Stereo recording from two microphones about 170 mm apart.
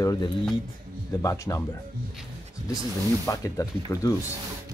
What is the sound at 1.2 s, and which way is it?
Speech, 20° left (ahead or behind).